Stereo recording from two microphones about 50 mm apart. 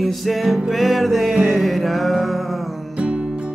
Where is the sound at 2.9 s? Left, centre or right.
Right.